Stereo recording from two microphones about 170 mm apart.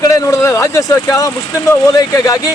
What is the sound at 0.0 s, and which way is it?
Speech, 20° left (ahead or behind).